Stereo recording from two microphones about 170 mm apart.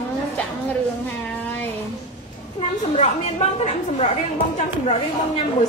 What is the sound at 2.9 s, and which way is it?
A woman's voice, 40° left (ahead or behind).